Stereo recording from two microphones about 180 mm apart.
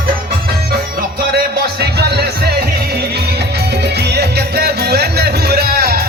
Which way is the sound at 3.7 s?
70° right (ahead or behind).